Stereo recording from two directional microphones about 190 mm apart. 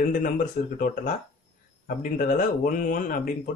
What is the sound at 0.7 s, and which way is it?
Speech, 45° left (ahead or behind).